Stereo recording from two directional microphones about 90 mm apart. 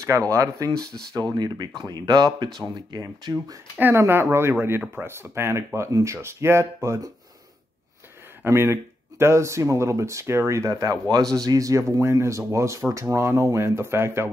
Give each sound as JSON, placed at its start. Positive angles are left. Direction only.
{"t": 0.3, "sound": "speech", "side_deg": -40}
{"t": 3.9, "sound": "speech", "side_deg": -30}
{"t": 8.5, "sound": "speech", "side_deg": -30}